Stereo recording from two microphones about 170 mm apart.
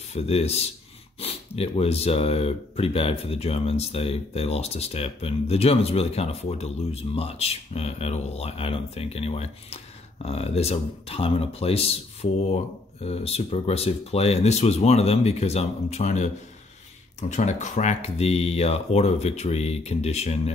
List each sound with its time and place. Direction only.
0.1 s speech: 40° left (ahead or behind)
17.3 s speech: 45° left (ahead or behind)